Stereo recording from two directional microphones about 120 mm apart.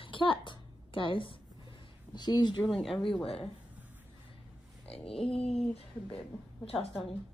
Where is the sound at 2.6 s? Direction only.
Centre (ahead or behind).